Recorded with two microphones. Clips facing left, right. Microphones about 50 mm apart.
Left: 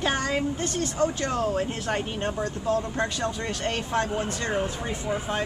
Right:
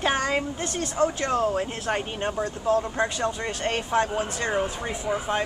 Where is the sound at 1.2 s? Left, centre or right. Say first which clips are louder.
Right 2 dB; centre.